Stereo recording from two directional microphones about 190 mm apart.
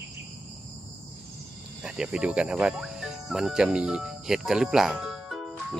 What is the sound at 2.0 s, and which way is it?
Speech, 5° right (ahead or behind).